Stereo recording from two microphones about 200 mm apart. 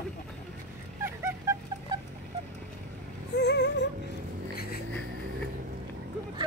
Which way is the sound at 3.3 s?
60° left (ahead or behind).